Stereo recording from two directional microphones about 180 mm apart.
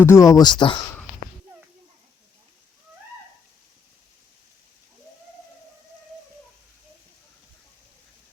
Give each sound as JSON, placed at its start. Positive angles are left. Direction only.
{"t": 0.0, "sound": "speech", "side_deg": 15}